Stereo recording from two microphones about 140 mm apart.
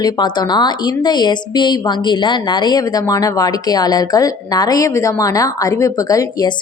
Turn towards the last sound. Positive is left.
turn(degrees=25)  # may be behind; listen again after turning